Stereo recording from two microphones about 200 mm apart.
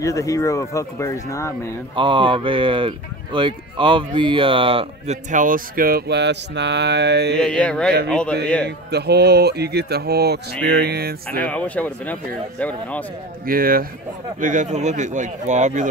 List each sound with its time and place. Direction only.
0.0 s speech: 15° left (ahead or behind)
2.0 s speech: 25° right (ahead or behind); by 7.3 s 60° right (ahead or behind)
7.3 s a sound: 5° left (ahead or behind)
8.6 s speech: 55° right (ahead or behind)
11.3 s speech: 5° left (ahead or behind)
13.5 s speech: 45° right (ahead or behind)